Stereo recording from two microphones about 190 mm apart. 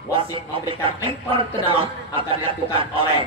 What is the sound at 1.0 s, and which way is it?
A man's voice, 25° right (ahead or behind).